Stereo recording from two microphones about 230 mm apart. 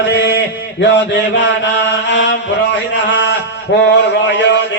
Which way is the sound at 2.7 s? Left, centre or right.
Left.